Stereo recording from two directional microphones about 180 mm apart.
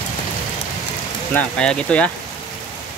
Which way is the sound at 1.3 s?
5° left (ahead or behind).